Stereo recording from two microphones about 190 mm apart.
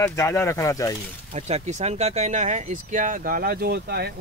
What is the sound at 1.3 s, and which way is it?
Speech, 35° right (ahead or behind).